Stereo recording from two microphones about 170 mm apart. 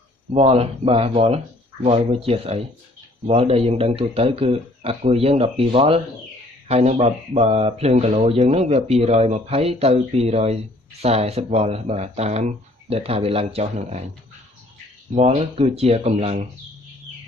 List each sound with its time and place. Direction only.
0.3 s speech: 35° right (ahead or behind)
15.1 s speech: 35° right (ahead or behind)